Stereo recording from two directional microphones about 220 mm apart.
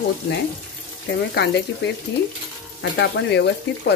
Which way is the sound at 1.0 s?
50° left (ahead or behind).